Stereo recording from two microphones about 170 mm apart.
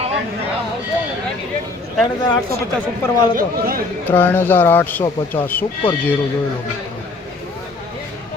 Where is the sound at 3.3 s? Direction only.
60° right (ahead or behind).